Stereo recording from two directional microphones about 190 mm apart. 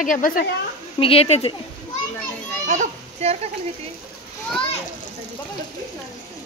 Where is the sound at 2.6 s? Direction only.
35° right (ahead or behind).